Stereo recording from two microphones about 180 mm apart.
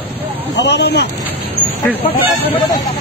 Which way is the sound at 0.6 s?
70° left (ahead or behind).